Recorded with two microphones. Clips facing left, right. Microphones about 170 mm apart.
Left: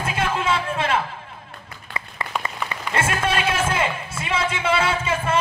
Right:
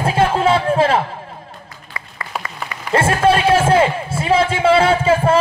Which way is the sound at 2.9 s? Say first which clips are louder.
Right 9 dB; 35° right (ahead or behind).